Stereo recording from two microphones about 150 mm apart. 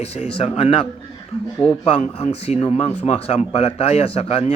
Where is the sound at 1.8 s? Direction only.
40° left (ahead or behind).